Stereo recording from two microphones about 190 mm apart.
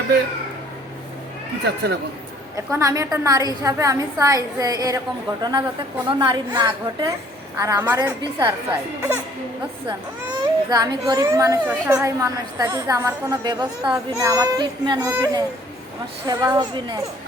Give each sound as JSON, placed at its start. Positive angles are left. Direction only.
{"t": 1.6, "sound": "speech", "side_deg": -60}
{"t": 2.6, "sound": "a woman's voice", "side_deg": -15}
{"t": 10.7, "sound": "a woman's voice", "side_deg": -20}